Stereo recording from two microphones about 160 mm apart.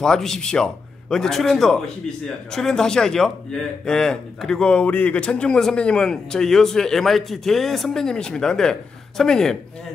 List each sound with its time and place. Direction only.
0.0 s a man's voice: 5° left (ahead or behind)